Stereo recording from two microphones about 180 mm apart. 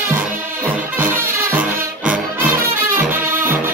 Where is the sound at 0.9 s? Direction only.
10° right (ahead or behind).